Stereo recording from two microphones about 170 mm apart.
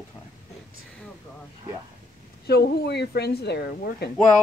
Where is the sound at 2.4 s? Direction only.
70° left (ahead or behind).